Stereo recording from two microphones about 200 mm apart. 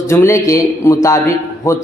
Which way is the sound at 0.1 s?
15° left (ahead or behind).